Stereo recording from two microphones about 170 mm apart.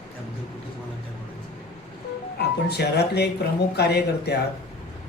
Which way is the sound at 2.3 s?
75° left (ahead or behind).